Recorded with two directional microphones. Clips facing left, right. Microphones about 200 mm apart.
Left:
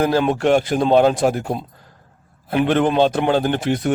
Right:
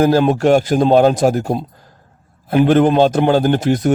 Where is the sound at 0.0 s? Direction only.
40° right (ahead or behind).